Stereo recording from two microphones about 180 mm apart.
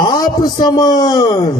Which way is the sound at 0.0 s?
20° left (ahead or behind).